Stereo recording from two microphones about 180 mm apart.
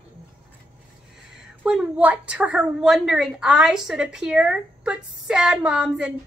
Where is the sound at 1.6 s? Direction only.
5° right (ahead or behind).